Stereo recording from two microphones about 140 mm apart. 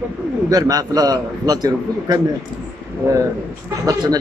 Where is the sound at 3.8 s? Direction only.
30° right (ahead or behind).